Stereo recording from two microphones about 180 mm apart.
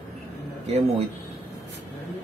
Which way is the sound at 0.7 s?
35° right (ahead or behind).